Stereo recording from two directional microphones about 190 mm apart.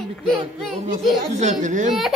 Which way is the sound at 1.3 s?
40° right (ahead or behind).